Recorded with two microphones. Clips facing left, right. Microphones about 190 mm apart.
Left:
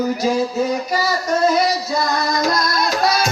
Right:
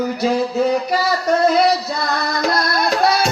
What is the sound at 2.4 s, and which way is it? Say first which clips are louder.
Music: right 1 dB; 60° right (ahead or behind).